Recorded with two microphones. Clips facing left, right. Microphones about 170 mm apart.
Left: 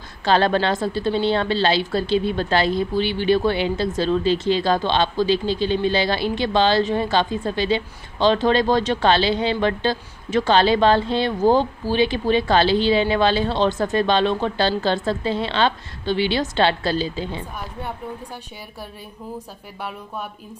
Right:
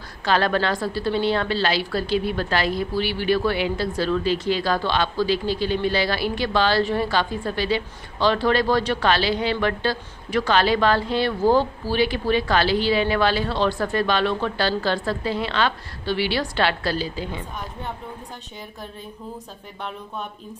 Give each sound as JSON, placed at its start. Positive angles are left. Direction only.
{"t": 0.2, "sound": "a woman's voice", "side_deg": 25}
{"t": 19.3, "sound": "speech", "side_deg": 10}